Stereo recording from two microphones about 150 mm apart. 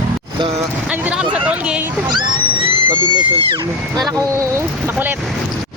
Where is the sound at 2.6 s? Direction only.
35° right (ahead or behind).